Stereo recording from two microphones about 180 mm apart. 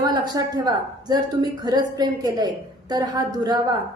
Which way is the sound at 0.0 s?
20° right (ahead or behind).